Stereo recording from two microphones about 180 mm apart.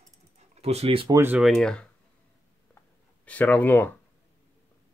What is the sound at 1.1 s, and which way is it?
Speech, 10° right (ahead or behind).